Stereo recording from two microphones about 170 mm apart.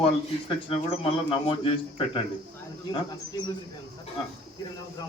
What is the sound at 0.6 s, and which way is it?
Speech, 30° left (ahead or behind).